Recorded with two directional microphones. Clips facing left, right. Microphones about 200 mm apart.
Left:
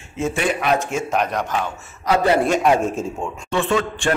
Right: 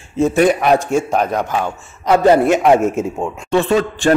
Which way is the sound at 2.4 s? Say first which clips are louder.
Right 5 dB; 20° right (ahead or behind).